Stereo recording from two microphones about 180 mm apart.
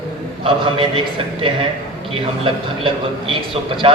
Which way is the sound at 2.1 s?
30° right (ahead or behind).